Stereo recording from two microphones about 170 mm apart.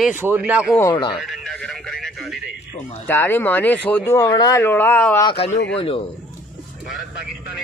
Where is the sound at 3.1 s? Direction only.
10° left (ahead or behind).